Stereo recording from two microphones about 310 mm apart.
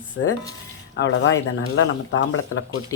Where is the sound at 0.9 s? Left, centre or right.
Left.